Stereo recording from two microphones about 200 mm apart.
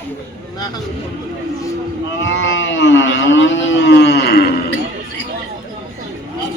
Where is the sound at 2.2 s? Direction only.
65° left (ahead or behind).